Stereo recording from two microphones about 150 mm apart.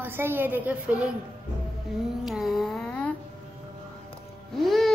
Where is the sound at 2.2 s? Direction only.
Centre (ahead or behind).